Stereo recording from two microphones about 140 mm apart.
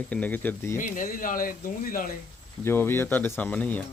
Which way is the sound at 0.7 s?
70° left (ahead or behind).